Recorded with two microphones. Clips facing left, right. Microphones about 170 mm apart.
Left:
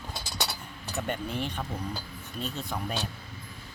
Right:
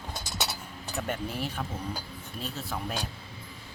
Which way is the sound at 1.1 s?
5° right (ahead or behind).